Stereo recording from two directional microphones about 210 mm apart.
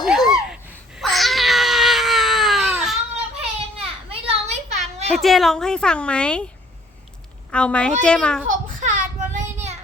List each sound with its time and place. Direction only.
0.0 s a sound: centre (ahead or behind)
0.5 s baby cry: centre (ahead or behind)
3.8 s children playing: 30° right (ahead or behind)
5.1 s a woman's voice: centre (ahead or behind)
7.5 s a woman's voice: 5° left (ahead or behind)
8.4 s a sound: 35° right (ahead or behind)